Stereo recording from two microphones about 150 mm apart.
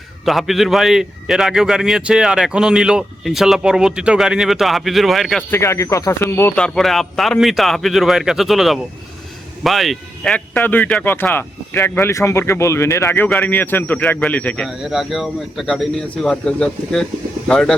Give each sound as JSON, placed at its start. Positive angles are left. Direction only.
{"t": 0.3, "sound": "a man's voice", "side_deg": 0}
{"t": 5.4, "sound": "speech", "side_deg": 15}
{"t": 6.6, "sound": "a man's voice", "side_deg": 0}